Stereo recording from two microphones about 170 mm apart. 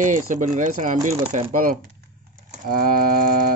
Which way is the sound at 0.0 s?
50° right (ahead or behind).